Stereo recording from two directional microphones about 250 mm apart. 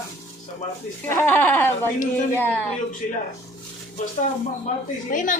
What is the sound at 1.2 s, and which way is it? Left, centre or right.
Speech, centre.